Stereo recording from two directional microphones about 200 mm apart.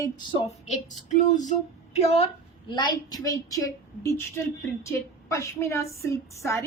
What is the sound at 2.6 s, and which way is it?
A woman's voice, 20° left (ahead or behind).